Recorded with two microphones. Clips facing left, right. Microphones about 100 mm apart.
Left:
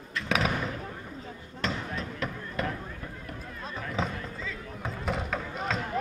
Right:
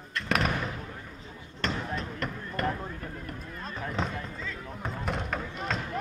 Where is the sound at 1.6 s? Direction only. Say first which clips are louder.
Even; centre (ahead or behind).